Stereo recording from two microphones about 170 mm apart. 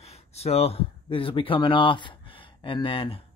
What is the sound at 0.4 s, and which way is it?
Speech, 35° left (ahead or behind).